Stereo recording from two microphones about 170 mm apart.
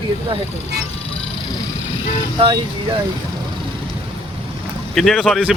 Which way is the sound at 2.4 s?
30° right (ahead or behind).